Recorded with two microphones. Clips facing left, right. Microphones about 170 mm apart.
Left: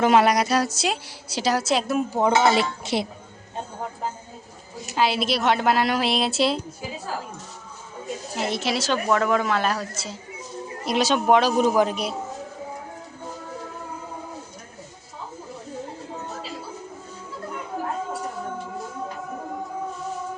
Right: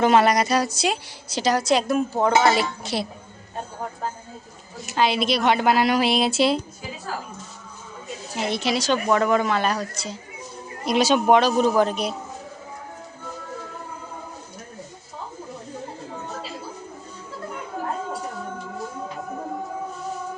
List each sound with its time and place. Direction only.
0.0 s a woman's voice: 10° left (ahead or behind)
2.4 s speech: 20° left (ahead or behind)
4.9 s a woman's voice: 5° left (ahead or behind)
8.4 s a woman's voice: centre (ahead or behind)